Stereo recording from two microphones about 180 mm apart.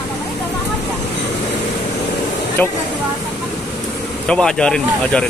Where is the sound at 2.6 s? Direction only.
10° left (ahead or behind).